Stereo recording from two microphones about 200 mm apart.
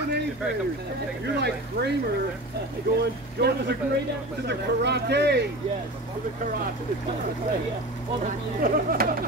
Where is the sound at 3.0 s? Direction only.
55° right (ahead or behind).